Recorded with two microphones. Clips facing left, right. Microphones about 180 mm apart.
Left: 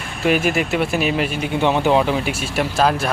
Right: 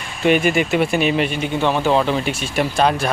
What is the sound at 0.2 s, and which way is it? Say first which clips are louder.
Speech: right 2 dB; centre (ahead or behind).